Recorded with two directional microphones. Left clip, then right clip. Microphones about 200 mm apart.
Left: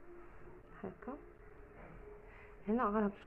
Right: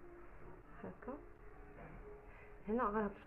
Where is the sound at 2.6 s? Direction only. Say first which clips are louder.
Left 3 dB; 40° left (ahead or behind).